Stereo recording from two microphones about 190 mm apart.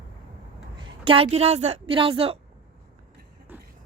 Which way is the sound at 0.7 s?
30° right (ahead or behind).